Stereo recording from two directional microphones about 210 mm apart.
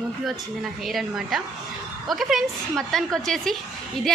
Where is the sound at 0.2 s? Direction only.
Centre (ahead or behind).